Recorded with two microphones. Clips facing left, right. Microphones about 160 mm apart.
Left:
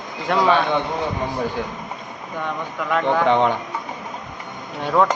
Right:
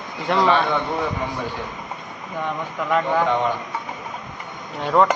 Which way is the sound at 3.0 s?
70° left (ahead or behind).